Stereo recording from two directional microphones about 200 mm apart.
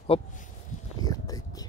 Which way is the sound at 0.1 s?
30° left (ahead or behind).